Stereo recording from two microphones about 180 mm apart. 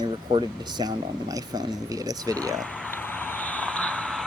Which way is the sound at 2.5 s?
5° left (ahead or behind).